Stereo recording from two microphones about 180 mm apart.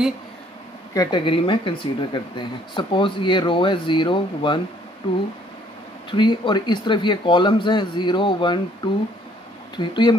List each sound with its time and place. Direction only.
0.9 s speech: 25° left (ahead or behind)